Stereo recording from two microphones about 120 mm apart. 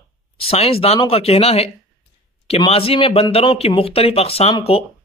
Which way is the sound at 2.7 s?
50° left (ahead or behind).